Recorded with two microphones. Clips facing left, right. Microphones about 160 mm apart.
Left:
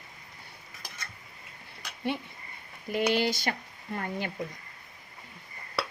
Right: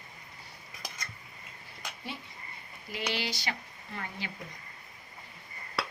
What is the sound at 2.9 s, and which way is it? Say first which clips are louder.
Speech: left 9 dB; 50° left (ahead or behind).